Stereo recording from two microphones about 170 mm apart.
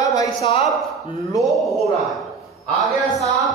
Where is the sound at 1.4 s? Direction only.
Centre (ahead or behind).